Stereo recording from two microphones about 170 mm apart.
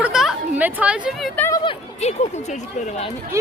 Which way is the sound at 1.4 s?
15° left (ahead or behind).